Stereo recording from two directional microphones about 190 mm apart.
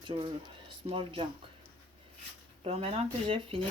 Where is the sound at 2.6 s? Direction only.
30° right (ahead or behind).